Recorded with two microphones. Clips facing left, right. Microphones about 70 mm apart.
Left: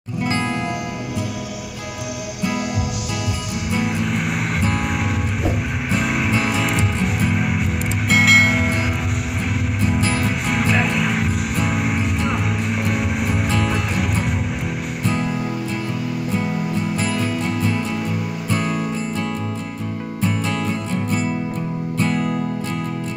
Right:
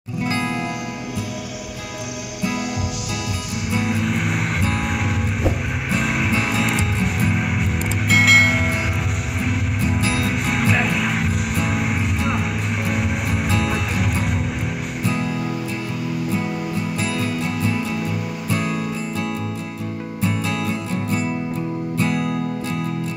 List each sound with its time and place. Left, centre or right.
3.7 s music: centre
18.5 s music: left
21.9 s music: left